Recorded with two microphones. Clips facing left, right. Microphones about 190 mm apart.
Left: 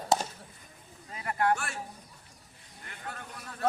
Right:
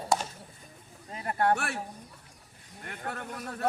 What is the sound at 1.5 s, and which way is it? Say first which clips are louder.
Speech: right 2 dB; 65° right (ahead or behind).